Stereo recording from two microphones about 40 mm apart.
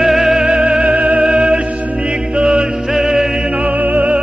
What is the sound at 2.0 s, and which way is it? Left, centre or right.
Music, centre.